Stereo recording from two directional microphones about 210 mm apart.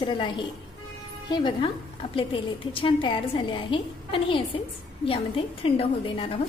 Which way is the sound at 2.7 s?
25° left (ahead or behind).